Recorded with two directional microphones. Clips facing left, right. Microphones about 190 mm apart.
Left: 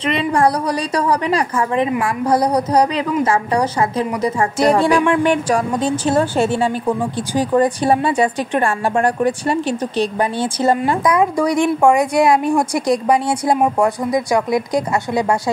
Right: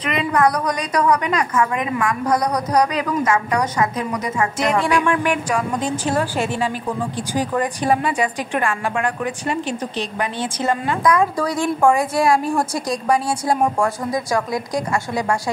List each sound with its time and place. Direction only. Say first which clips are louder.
0.0 s a woman's voice: left 2 dB; 30° left (ahead or behind)
11.1 s a woman's voice: left 1 dB; 15° left (ahead or behind)